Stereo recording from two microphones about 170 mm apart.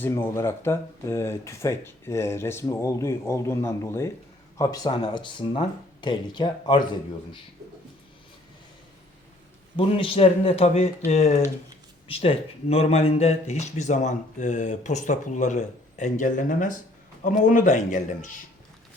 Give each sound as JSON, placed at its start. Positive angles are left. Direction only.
{"t": 0.0, "sound": "speech", "side_deg": 15}
{"t": 9.7, "sound": "speech", "side_deg": 30}